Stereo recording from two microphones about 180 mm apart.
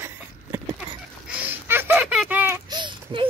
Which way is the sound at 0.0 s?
10° right (ahead or behind).